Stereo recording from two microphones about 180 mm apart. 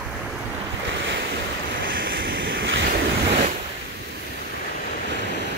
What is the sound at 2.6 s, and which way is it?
Waves, 90° right.